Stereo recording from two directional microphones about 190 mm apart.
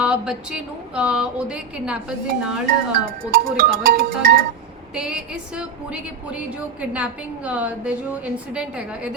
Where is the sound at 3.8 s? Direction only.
50° right (ahead or behind).